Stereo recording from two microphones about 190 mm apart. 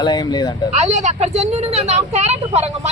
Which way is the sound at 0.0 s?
20° left (ahead or behind).